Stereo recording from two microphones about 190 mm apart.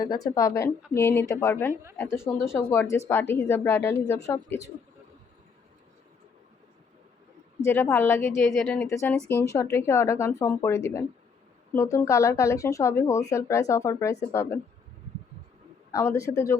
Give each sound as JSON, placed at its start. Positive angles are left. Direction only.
{"t": 0.0, "sound": "speech", "side_deg": 20}
{"t": 1.7, "sound": "a woman's voice", "side_deg": -15}
{"t": 2.0, "sound": "speech", "side_deg": 15}
{"t": 7.6, "sound": "speech", "side_deg": 10}
{"t": 15.9, "sound": "speech", "side_deg": 15}